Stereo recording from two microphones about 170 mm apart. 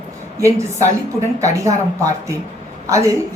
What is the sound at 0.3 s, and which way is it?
A woman's voice, 15° right (ahead or behind).